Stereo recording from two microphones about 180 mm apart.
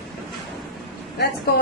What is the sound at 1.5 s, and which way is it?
Speech, 60° left (ahead or behind).